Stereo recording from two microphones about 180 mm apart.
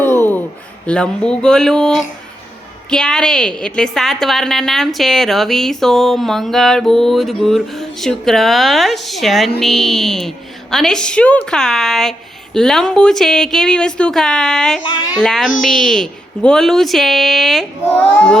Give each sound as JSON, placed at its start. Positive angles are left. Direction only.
{"t": 0.0, "sound": "a sound", "side_deg": 10}
{"t": 0.9, "sound": "a woman's voice", "side_deg": 5}
{"t": 14.8, "sound": "a child's voice", "side_deg": 25}
{"t": 15.2, "sound": "a woman's voice", "side_deg": 0}